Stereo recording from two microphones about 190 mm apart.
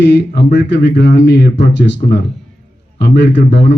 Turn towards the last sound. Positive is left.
turn(degrees=65)  # may be behind; listen again after turning